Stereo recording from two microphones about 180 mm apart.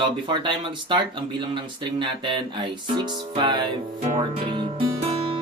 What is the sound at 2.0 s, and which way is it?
Music, 25° right (ahead or behind).